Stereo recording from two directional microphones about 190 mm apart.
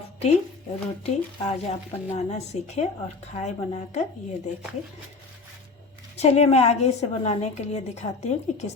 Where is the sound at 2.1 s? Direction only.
35° left (ahead or behind).